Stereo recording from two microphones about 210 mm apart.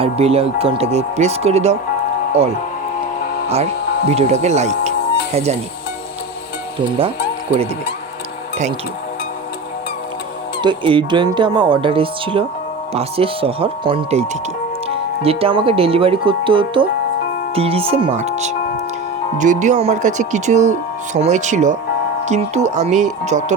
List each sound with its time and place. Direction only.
0.0 s speech: 30° right (ahead or behind)
4.1 s speech: 30° right (ahead or behind)
10.6 s speech: 20° right (ahead or behind)